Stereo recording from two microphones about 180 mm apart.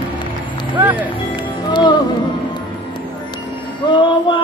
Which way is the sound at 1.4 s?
25° left (ahead or behind).